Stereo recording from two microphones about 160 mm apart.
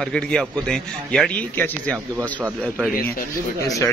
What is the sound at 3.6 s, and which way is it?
Speech, 20° left (ahead or behind).